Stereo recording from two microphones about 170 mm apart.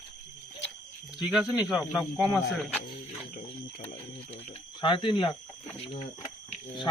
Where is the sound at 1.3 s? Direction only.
5° right (ahead or behind).